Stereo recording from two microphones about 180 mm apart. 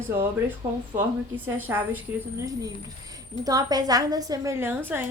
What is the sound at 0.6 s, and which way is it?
A woman's voice, 15° right (ahead or behind).